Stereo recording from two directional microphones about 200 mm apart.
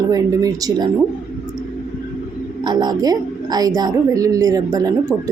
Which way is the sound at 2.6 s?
20° right (ahead or behind).